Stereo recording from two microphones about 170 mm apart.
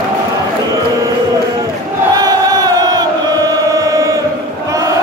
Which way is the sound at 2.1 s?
20° right (ahead or behind).